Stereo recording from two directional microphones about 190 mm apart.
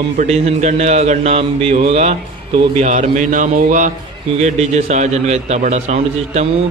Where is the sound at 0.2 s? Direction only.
35° right (ahead or behind).